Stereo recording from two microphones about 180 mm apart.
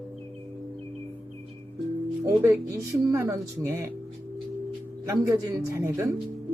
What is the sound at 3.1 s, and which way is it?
Speech, 15° right (ahead or behind).